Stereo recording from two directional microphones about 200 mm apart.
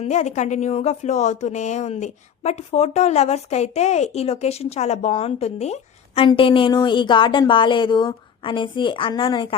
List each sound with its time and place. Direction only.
0.0 s speech: 35° left (ahead or behind)